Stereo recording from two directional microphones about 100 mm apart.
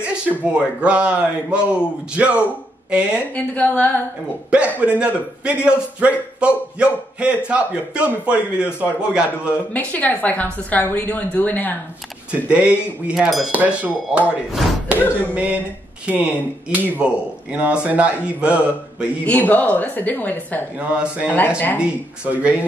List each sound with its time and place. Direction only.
0.4 s a man's voice: 10° right (ahead or behind)
3.2 s a woman's voice: 15° left (ahead or behind)
4.5 s a man's voice: 10° right (ahead or behind)
9.5 s a woman's voice: 15° left (ahead or behind)
12.3 s a man's voice: 10° right (ahead or behind)
19.2 s a woman's voice: 15° left (ahead or behind)
20.9 s a man's voice: 10° right (ahead or behind)
21.5 s speech: 20° left (ahead or behind)
21.8 s a man's voice: 10° right (ahead or behind)